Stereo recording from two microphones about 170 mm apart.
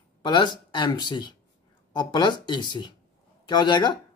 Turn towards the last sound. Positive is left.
turn(degrees=25)  # may be behind; listen again after turning